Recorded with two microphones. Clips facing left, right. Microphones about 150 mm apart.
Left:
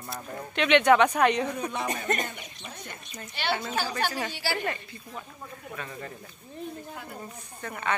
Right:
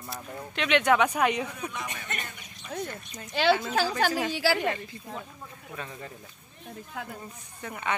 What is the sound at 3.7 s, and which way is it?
Speech, 90° right.